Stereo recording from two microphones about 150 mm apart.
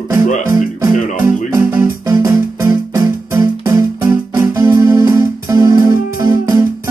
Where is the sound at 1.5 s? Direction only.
20° right (ahead or behind).